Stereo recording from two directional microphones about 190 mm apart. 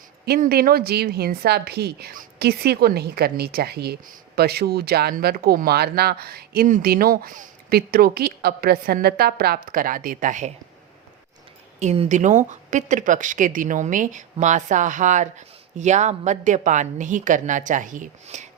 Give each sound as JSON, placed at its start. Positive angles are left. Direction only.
{"t": 0.3, "sound": "a woman's voice", "side_deg": -55}
{"t": 11.8, "sound": "speech", "side_deg": -40}